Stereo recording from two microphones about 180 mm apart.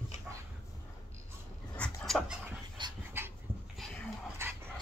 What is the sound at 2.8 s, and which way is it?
Dog, 25° right (ahead or behind).